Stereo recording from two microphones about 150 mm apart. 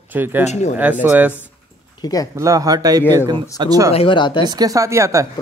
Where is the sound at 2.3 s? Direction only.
20° right (ahead or behind).